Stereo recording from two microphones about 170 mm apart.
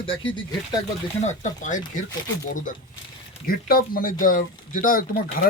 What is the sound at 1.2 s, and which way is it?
Speech, 45° left (ahead or behind).